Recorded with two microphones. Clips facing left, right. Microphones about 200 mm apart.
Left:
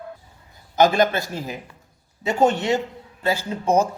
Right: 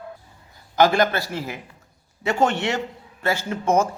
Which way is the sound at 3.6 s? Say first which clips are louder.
Left 1 dB; 35° left (ahead or behind).